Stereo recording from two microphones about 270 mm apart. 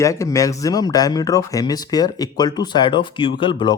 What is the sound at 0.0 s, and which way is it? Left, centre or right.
Speech, centre.